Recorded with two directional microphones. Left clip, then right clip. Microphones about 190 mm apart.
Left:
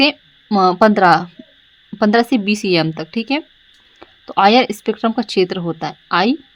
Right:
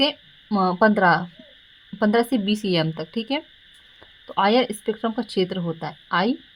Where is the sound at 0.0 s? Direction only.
25° left (ahead or behind).